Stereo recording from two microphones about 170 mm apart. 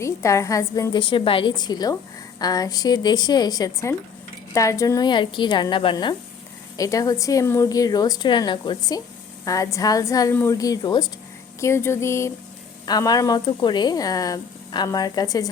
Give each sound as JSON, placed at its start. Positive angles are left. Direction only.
{"t": 0.0, "sound": "speech", "side_deg": 15}
{"t": 11.6, "sound": "a sound", "side_deg": 15}
{"t": 12.8, "sound": "speech", "side_deg": 20}